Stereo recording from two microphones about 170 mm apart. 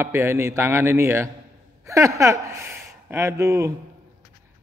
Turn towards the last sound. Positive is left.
turn(degrees=-20)  # may be behind; listen again after turning